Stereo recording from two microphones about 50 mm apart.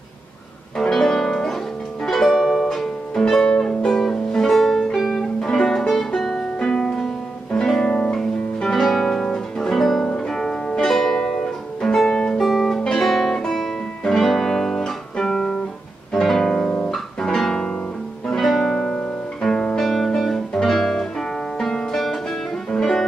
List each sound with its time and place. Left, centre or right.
0.7 s music: centre
5.4 s music: centre
8.8 s guitar: centre
10.0 s music: centre
10.9 s music: centre
12.4 s guitar: centre
18.2 s music: centre
19.8 s music: centre